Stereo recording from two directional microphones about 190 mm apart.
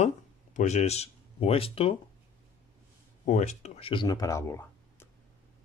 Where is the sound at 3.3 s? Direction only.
40° left (ahead or behind); by 5.0 s 15° left (ahead or behind).